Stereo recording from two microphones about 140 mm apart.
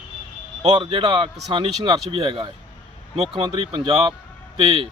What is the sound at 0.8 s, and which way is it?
Speech, 35° right (ahead or behind).